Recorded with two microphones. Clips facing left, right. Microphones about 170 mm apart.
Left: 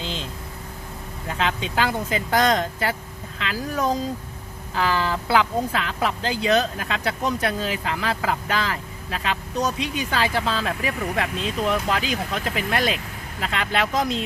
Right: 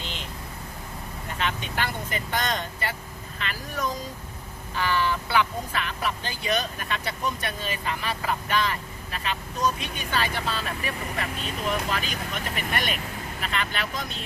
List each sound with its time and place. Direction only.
1.3 s speech: 90° left
4.7 s speech: 90° left